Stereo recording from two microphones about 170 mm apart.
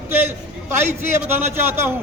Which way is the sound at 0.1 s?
15° right (ahead or behind).